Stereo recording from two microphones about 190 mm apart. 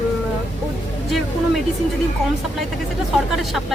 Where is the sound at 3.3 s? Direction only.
Centre (ahead or behind).